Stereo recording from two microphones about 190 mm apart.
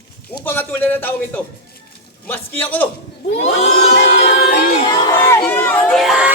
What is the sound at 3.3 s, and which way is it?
Crowd, 35° left (ahead or behind).